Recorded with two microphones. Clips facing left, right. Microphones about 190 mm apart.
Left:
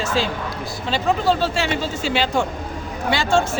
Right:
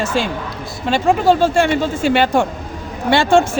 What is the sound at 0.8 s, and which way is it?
Speech, 50° right (ahead or behind).